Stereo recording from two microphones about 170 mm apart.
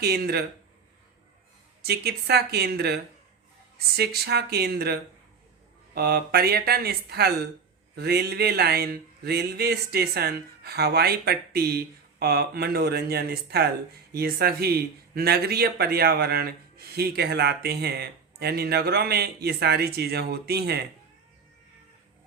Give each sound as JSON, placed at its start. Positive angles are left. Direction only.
{"t": 0.0, "sound": "speech", "side_deg": -70}
{"t": 1.8, "sound": "speech", "side_deg": -70}